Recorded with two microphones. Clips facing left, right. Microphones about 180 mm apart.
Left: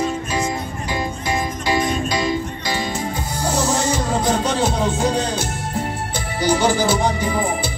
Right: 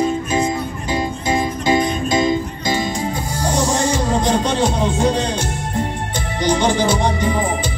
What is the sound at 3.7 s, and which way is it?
Music, 5° left (ahead or behind).